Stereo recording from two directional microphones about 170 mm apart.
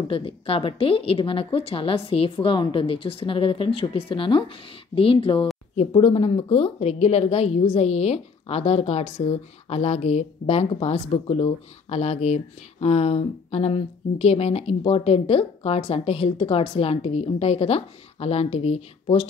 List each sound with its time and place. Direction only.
0.1 s a woman's voice: 30° left (ahead or behind)